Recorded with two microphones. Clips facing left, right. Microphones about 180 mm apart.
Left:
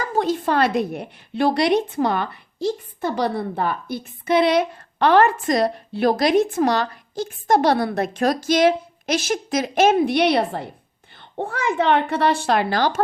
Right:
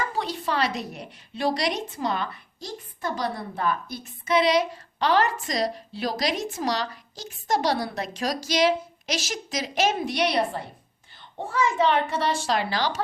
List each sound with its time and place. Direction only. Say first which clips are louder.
0.0 s a woman's voice: left 7 dB; 45° left (ahead or behind)